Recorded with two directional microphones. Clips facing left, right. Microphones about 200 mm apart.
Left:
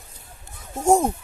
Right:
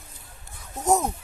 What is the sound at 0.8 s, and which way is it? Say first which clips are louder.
Speech: left 5 dB; 30° left (ahead or behind).